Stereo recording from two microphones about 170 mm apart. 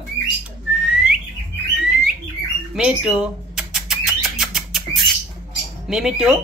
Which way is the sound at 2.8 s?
5° right (ahead or behind).